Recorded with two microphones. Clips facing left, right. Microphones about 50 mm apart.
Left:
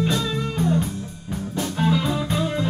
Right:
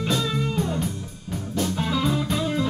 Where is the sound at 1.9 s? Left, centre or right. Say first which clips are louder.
Left 1 dB; centre.